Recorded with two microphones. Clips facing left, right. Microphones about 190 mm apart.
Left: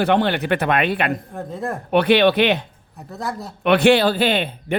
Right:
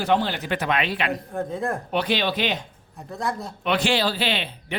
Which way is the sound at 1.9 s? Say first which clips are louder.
Left 12 dB; 60° left (ahead or behind).